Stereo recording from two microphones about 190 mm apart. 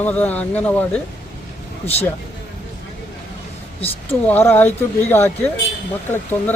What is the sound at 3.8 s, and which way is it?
Speech, 10° left (ahead or behind).